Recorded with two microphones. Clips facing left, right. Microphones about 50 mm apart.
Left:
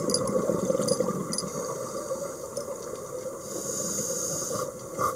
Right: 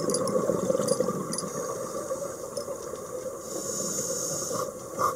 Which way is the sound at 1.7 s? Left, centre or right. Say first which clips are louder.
Even; right.